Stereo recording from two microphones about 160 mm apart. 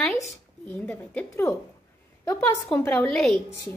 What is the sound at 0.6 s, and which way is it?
A woman's voice, 10° left (ahead or behind).